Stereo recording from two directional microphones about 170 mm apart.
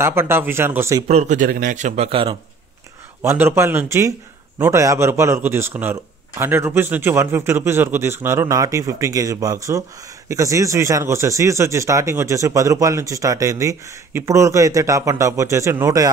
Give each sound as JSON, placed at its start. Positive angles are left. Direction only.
{"t": 0.0, "sound": "speech", "side_deg": -15}
{"t": 1.0, "sound": "a man's voice", "side_deg": -45}
{"t": 3.2, "sound": "speech", "side_deg": -15}